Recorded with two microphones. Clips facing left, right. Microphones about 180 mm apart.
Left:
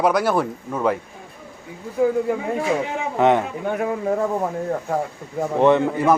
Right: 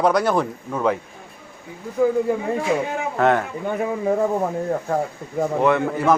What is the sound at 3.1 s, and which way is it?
Speech, 20° left (ahead or behind).